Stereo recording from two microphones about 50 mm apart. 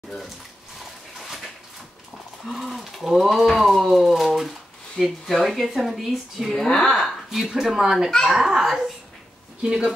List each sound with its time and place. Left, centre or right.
1.2 s a sound: centre
2.4 s speech: centre
8.1 s speech: centre
8.4 s a child's voice: centre